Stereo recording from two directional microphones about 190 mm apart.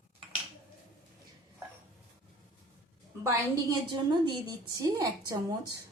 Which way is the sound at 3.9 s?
25° right (ahead or behind).